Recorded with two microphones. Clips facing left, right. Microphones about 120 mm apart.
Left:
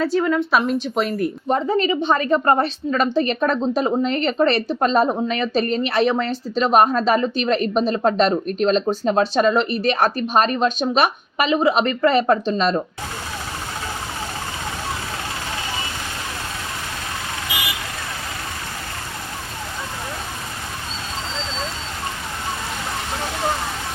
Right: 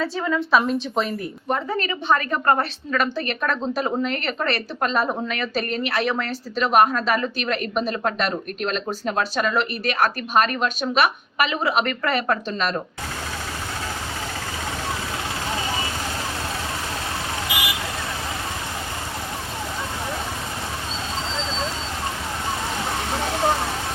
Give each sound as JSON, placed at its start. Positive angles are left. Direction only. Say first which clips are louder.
{"t": 0.0, "sound": "a woman's voice", "louder": "left 5 dB", "side_deg": 0}
{"t": 1.5, "sound": "a woman's voice", "louder": "left 5 dB", "side_deg": 25}